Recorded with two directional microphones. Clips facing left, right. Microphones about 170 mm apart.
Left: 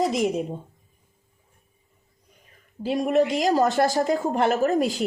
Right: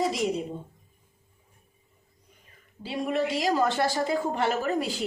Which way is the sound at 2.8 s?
45° left (ahead or behind).